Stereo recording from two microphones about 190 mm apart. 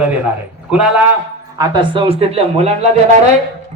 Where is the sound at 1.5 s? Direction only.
20° right (ahead or behind).